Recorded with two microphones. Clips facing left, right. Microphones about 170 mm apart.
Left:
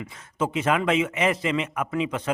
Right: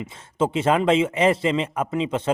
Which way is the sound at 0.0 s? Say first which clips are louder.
Right 4 dB; 30° right (ahead or behind).